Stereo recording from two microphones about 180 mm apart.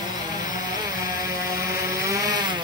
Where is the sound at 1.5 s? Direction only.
15° right (ahead or behind).